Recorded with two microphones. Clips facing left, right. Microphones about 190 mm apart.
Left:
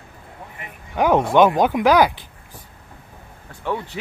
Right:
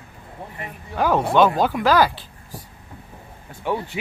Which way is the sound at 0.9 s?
20° left (ahead or behind).